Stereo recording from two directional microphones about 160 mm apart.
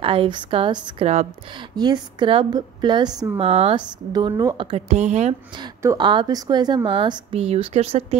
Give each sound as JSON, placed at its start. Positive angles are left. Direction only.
{"t": 0.0, "sound": "a woman's voice", "side_deg": -35}
{"t": 1.8, "sound": "a woman's voice", "side_deg": -30}
{"t": 3.4, "sound": "a woman's voice", "side_deg": -40}
{"t": 4.1, "sound": "a woman's voice", "side_deg": -25}
{"t": 5.9, "sound": "a woman's voice", "side_deg": -30}